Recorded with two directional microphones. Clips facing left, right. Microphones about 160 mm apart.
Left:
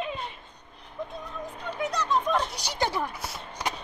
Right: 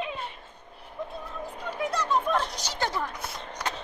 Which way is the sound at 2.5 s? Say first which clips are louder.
Left 2 dB; 15° left (ahead or behind).